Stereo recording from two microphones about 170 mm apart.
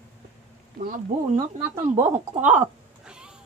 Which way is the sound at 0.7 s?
50° right (ahead or behind).